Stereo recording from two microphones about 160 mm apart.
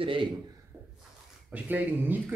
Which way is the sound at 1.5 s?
10° right (ahead or behind).